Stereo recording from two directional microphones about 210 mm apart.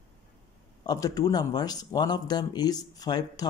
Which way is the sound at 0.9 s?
15° left (ahead or behind).